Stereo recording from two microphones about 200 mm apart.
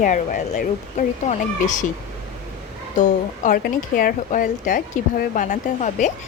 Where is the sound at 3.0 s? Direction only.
40° left (ahead or behind).